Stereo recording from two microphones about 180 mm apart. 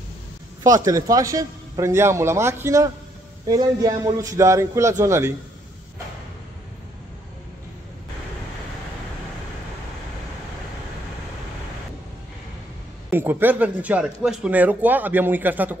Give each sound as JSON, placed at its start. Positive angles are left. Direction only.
{"t": 0.7, "sound": "a man's voice", "side_deg": -20}
{"t": 13.1, "sound": "speech", "side_deg": -10}